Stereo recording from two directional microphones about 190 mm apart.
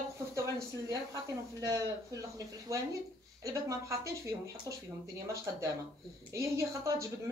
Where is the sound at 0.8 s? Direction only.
15° right (ahead or behind).